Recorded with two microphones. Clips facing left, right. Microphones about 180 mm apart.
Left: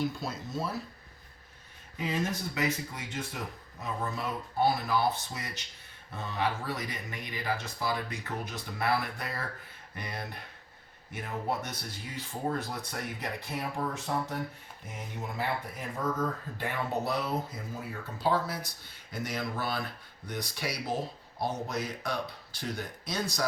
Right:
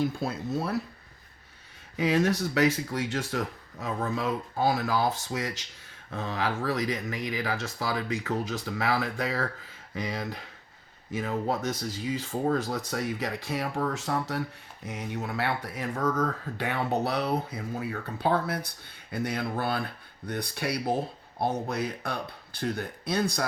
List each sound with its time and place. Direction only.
0.1 s speech: 55° right (ahead or behind)
2.0 s speech: 85° right
14.8 s speech: 70° right (ahead or behind); by 23.5 s 55° right (ahead or behind)